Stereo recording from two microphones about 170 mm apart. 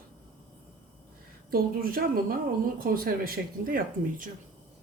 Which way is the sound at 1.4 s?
60° right (ahead or behind).